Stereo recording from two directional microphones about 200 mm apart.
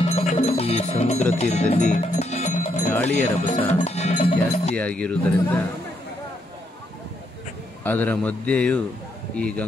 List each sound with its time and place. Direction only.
0.0 s music: 35° left (ahead or behind)
3.3 s cowbell: 30° left (ahead or behind)
4.7 s a man's voice: 5° left (ahead or behind)
7.8 s a man's voice: 10° left (ahead or behind)